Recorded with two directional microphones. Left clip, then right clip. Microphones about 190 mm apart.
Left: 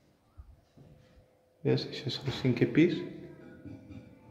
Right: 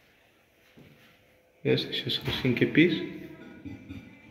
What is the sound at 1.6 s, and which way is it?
Speech, 15° left (ahead or behind).